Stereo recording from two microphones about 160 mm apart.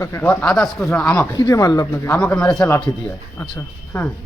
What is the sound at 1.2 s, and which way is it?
Speech, 20° left (ahead or behind).